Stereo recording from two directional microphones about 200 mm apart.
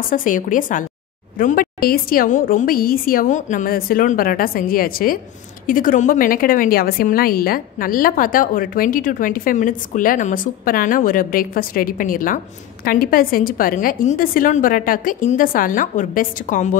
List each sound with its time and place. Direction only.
0.1 s a woman's voice: 40° left (ahead or behind)